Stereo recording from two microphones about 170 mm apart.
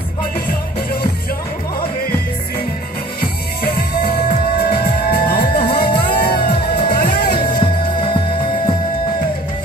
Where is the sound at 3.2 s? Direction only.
65° left (ahead or behind).